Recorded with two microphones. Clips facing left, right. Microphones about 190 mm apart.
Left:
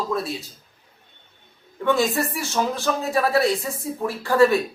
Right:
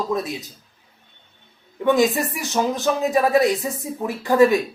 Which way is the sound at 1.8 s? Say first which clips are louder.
Right 3 dB; 15° right (ahead or behind).